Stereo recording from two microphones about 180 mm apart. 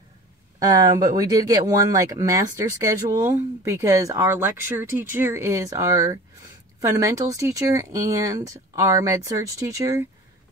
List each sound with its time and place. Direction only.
0.6 s speech: 20° right (ahead or behind)